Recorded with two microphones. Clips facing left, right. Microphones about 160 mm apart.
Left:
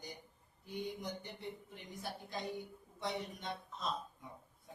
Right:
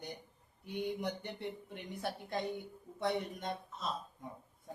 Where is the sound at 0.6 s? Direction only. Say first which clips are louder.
Right 5 dB; 65° right (ahead or behind).